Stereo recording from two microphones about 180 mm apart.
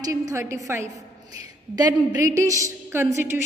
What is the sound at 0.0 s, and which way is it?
A woman's voice, 20° right (ahead or behind).